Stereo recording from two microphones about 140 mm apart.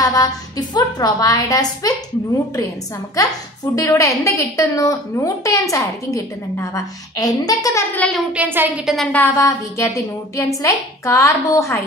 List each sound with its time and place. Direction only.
0.0 s speech: 25° left (ahead or behind)
3.7 s speech: 20° left (ahead or behind)
7.9 s a child's voice: 10° left (ahead or behind)
8.3 s speech: 10° right (ahead or behind)
8.9 s speech: 10° left (ahead or behind)